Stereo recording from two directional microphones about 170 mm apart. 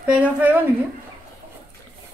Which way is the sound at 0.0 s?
10° right (ahead or behind).